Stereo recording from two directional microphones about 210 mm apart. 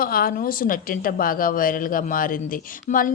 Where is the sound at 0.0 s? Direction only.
45° left (ahead or behind).